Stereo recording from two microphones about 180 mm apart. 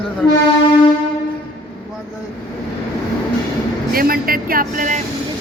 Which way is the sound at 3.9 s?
55° right (ahead or behind).